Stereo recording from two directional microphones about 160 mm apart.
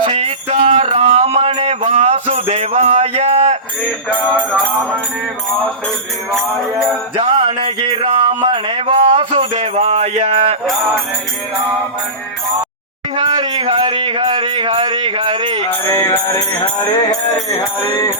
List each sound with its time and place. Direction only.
0.0 s music: 35° right (ahead or behind)
4.1 s music: 10° left (ahead or behind)
7.2 s a sound: 35° right (ahead or behind)
13.1 s speech: 25° right (ahead or behind)
15.9 s music: 15° left (ahead or behind)